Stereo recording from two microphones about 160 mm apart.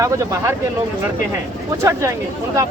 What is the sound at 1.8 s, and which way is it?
Speech, 20° right (ahead or behind).